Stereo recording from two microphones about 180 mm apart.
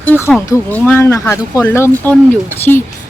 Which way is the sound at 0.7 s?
10° left (ahead or behind).